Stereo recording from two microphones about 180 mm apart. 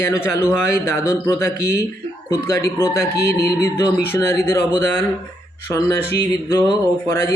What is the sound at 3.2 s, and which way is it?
Music, 60° left (ahead or behind).